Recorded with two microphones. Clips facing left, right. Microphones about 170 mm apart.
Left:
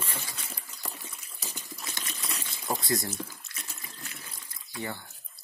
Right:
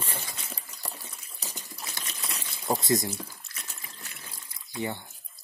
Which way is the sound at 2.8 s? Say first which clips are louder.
Right 4 dB; 20° right (ahead or behind).